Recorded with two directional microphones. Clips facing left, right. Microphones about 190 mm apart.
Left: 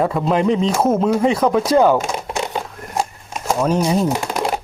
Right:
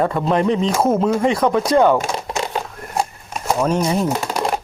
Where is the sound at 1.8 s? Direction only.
Centre (ahead or behind).